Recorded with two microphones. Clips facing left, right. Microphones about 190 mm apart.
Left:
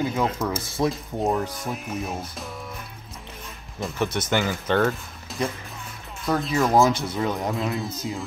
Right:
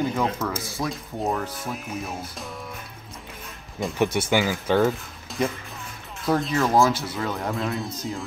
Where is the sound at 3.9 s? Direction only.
15° right (ahead or behind).